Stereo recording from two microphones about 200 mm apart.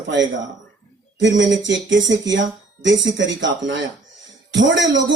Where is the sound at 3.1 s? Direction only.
65° right (ahead or behind).